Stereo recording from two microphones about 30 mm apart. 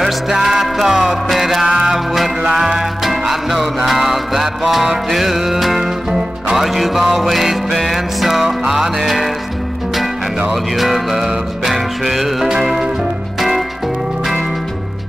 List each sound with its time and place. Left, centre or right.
0.3 s music: centre
3.0 s music: centre
10.5 s music: centre